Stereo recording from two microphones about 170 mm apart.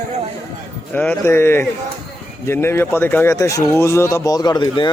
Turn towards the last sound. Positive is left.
turn(degrees=25)  # may be behind; listen again after turning